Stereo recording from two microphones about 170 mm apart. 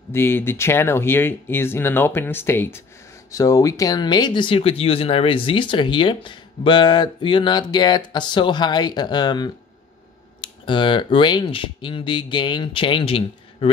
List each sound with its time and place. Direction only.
0.1 s speech: 15° left (ahead or behind); by 13.7 s 35° left (ahead or behind)